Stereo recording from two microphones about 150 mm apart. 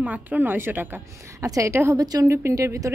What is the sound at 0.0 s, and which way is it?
A woman's voice, 10° right (ahead or behind).